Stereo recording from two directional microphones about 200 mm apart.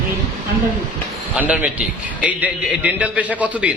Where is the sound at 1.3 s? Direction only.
5° right (ahead or behind).